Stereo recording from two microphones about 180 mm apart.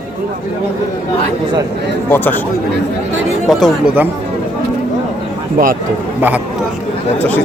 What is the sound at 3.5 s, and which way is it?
Speech, centre (ahead or behind).